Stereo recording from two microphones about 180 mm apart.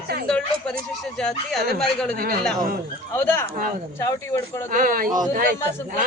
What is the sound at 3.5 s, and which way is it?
Speech, 50° right (ahead or behind).